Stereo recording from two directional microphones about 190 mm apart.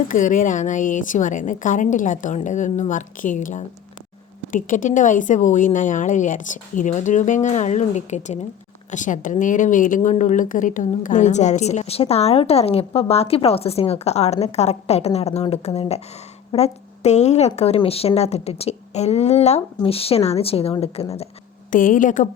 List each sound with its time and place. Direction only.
0.1 s a woman's voice: 45° left (ahead or behind)
21.7 s a woman's voice: 45° left (ahead or behind)